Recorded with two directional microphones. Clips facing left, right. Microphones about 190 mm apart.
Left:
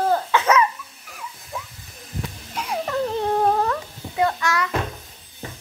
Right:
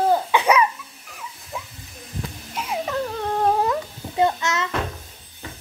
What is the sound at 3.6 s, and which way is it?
Babbling, 15° right (ahead or behind).